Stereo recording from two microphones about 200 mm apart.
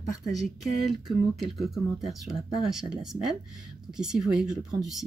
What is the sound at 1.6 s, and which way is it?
Speech, centre (ahead or behind).